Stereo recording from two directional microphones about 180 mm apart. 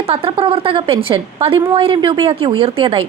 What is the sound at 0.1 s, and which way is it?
A woman's voice, 30° right (ahead or behind).